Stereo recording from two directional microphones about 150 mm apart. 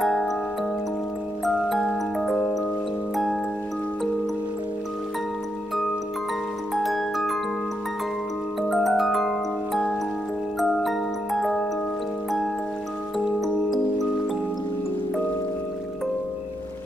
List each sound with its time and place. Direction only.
0.0 s music: centre (ahead or behind)
1.4 s glockenspiel: centre (ahead or behind)
6.7 s music: centre (ahead or behind)
8.6 s music: centre (ahead or behind)
10.6 s glockenspiel: centre (ahead or behind)
13.4 s music: centre (ahead or behind)